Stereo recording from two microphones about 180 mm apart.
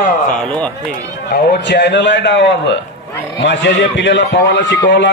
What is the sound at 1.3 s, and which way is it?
A man's voice, 65° left (ahead or behind).